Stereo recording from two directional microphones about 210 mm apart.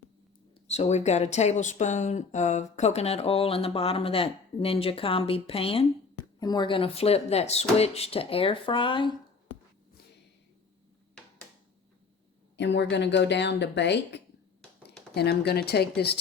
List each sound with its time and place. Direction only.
0.7 s speech: 30° left (ahead or behind)
12.5 s a woman's voice: 55° left (ahead or behind)